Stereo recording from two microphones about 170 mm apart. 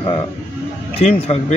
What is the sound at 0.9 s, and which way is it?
Speech, 35° left (ahead or behind).